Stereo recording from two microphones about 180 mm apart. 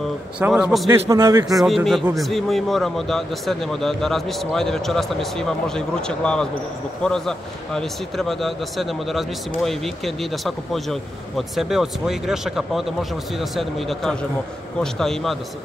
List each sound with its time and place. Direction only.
0.4 s speech: 5° right (ahead or behind)
0.8 s a man's voice: 15° right (ahead or behind)
1.6 s speech: centre (ahead or behind)